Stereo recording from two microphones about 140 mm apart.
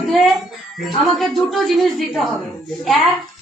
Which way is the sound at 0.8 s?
Centre (ahead or behind).